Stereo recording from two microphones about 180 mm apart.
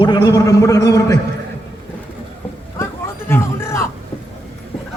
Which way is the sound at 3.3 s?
15° left (ahead or behind).